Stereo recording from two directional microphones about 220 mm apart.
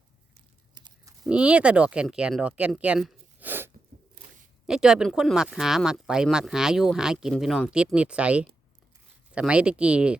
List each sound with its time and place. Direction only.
0.7 s livestock: 20° right (ahead or behind)
1.2 s speech: 5° right (ahead or behind)